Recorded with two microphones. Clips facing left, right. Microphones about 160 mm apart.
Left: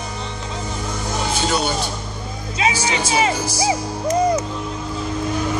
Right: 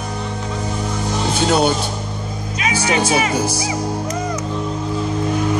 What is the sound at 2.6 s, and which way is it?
Music, 30° left (ahead or behind).